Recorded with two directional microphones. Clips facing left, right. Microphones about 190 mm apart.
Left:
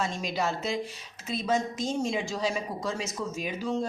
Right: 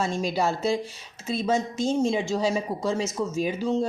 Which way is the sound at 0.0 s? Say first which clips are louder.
Right 5 dB; 30° right (ahead or behind).